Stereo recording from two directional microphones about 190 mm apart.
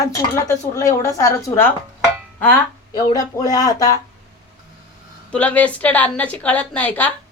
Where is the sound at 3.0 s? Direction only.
20° left (ahead or behind).